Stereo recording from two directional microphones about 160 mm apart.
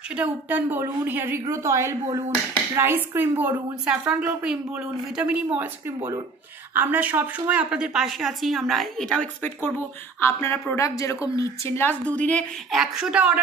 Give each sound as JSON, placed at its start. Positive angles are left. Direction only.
{"t": 0.1, "sound": "a woman's voice", "side_deg": -10}
{"t": 6.7, "sound": "a woman's voice", "side_deg": -10}